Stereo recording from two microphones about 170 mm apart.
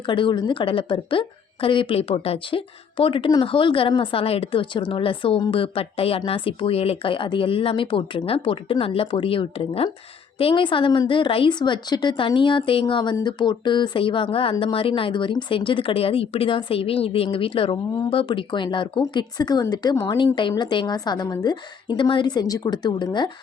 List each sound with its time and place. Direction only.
0.0 s a woman's voice: 30° left (ahead or behind)